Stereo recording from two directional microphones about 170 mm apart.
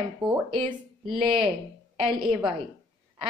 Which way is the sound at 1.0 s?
5° right (ahead or behind).